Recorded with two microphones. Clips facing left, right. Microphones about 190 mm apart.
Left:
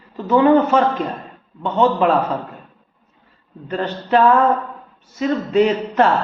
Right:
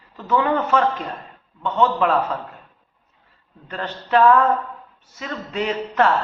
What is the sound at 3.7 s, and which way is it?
A man's voice, 35° left (ahead or behind).